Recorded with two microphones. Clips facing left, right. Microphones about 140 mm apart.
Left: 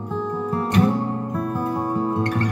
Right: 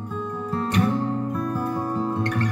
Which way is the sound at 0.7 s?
30° left (ahead or behind).